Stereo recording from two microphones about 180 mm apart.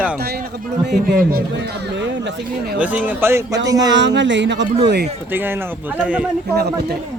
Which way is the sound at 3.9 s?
80° right.